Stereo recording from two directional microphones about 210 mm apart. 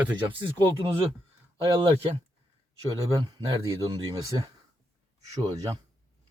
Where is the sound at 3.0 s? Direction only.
15° right (ahead or behind).